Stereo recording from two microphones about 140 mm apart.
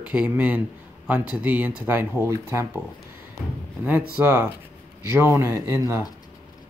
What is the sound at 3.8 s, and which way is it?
Speech, 10° right (ahead or behind).